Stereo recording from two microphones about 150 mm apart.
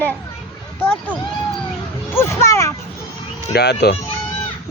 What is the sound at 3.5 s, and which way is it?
Speech, 90° left.